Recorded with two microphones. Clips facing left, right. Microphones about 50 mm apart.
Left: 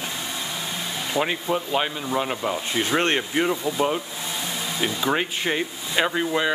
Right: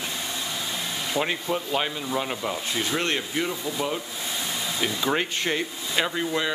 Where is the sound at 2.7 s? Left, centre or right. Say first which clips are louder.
Left 5 dB; left.